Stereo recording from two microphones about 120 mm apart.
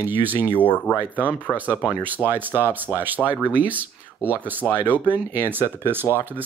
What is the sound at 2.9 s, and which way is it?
Speech, 20° left (ahead or behind).